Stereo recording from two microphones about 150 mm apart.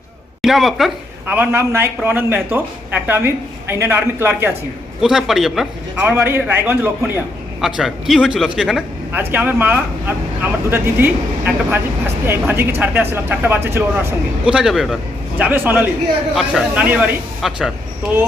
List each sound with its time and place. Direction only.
0.4 s speech: centre (ahead or behind)
1.3 s speech: 10° right (ahead or behind)
4.9 s speech: centre (ahead or behind)
6.1 s speech: 15° right (ahead or behind)
7.6 s speech: centre (ahead or behind)
14.5 s speech: 5° right (ahead or behind)
16.3 s speech: centre (ahead or behind)